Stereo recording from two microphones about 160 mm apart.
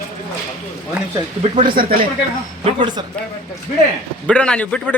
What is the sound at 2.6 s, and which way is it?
Speech, 30° right (ahead or behind).